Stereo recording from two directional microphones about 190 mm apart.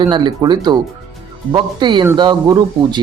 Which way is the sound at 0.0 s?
25° right (ahead or behind).